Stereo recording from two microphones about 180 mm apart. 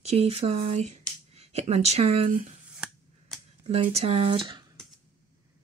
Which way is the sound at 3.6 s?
35° right (ahead or behind).